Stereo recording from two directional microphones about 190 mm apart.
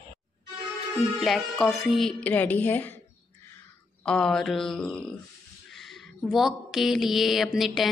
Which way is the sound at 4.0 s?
5° left (ahead or behind).